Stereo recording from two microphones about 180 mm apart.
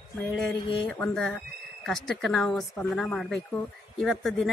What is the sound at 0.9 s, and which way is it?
Speech, 5° left (ahead or behind).